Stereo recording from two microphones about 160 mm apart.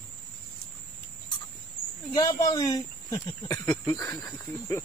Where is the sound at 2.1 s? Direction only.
20° left (ahead or behind).